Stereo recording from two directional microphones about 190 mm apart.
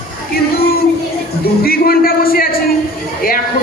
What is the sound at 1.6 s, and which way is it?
A man's voice, 50° left (ahead or behind).